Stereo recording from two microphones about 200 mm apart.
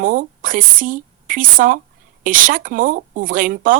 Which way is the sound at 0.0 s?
40° right (ahead or behind).